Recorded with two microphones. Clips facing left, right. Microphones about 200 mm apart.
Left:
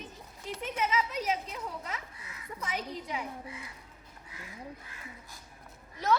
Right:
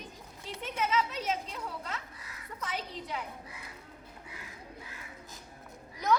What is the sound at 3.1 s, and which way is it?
Speech, 10° left (ahead or behind).